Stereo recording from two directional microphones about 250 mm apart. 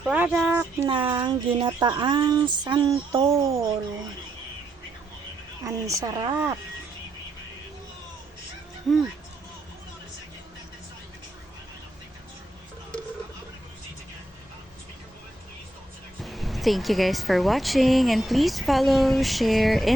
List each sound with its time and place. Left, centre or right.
0.0 s a sound: centre
0.9 s speech: centre
5.6 s speech: centre
16.2 s speech: centre